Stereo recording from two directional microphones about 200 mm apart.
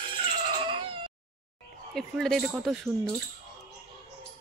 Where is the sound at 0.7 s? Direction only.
25° right (ahead or behind).